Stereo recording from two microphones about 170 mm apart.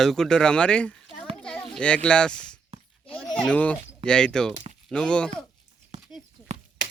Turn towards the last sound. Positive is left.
turn(degrees=-45)  # may be behind; listen again after turning